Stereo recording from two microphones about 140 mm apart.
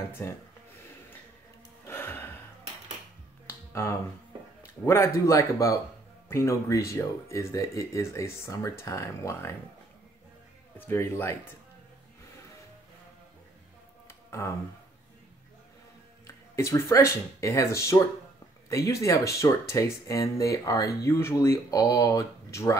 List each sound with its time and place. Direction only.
0.2 s speech: 15° left (ahead or behind)
1.9 s music: 15° left (ahead or behind)
3.4 s finger snapping: 20° left (ahead or behind)
4.8 s speech: 20° left (ahead or behind)
10.8 s speech: 15° left (ahead or behind)
14.0 s music: 20° left (ahead or behind)
16.3 s speech: 20° left (ahead or behind)